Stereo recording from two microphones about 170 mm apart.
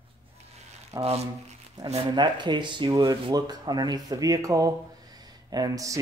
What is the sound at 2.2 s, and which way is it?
Speech, 25° right (ahead or behind).